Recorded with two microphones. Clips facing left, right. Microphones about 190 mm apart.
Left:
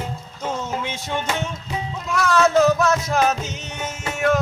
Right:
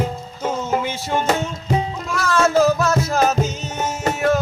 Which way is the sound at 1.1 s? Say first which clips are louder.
Right 6 dB; 45° right (ahead or behind).